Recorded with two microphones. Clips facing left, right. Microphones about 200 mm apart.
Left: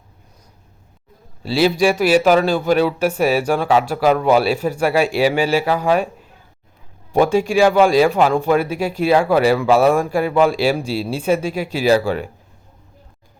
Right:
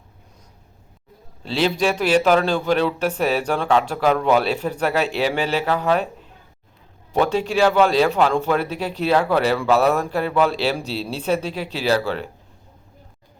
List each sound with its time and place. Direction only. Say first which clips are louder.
1.4 s a man's voice: left 5 dB; 10° left (ahead or behind)
7.1 s a man's voice: left 4 dB; 10° left (ahead or behind)